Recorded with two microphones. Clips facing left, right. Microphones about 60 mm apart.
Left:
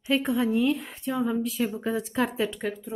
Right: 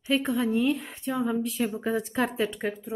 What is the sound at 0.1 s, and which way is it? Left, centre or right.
Speech, centre.